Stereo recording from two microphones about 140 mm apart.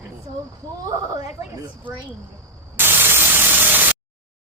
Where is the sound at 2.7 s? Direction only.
15° right (ahead or behind).